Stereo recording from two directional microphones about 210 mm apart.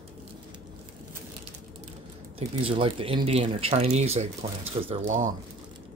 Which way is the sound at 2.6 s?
25° right (ahead or behind).